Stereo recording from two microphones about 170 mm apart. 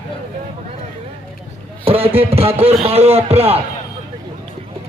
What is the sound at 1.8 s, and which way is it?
Speech, 35° right (ahead or behind).